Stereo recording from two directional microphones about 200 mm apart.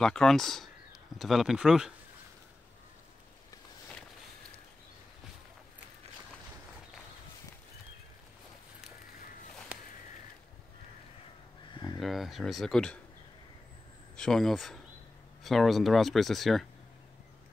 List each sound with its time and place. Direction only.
0.0 s speech: 5° left (ahead or behind)
11.7 s a sound: 20° left (ahead or behind)
12.0 s speech: centre (ahead or behind)
14.1 s speech: 5° left (ahead or behind)